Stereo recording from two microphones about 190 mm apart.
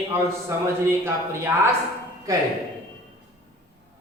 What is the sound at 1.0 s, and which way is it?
Speech, 15° right (ahead or behind).